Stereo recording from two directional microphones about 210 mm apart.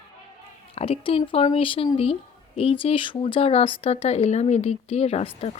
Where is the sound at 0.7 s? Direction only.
25° left (ahead or behind).